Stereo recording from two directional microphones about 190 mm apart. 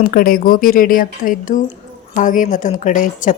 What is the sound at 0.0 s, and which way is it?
A woman's voice, 50° left (ahead or behind).